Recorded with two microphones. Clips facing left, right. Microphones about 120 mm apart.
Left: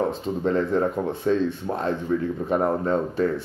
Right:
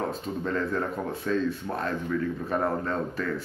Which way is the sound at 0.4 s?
25° left (ahead or behind).